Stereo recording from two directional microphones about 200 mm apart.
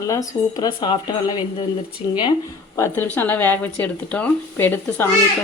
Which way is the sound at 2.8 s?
10° left (ahead or behind).